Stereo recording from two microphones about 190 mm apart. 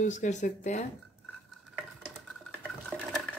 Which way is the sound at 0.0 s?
40° left (ahead or behind).